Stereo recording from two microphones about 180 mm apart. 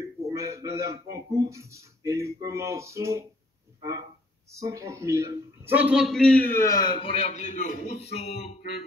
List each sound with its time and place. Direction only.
0.0 s speech: 20° right (ahead or behind)
4.5 s a man's voice: 15° right (ahead or behind); by 6.8 s 10° left (ahead or behind)
6.8 s a man's voice: 25° left (ahead or behind)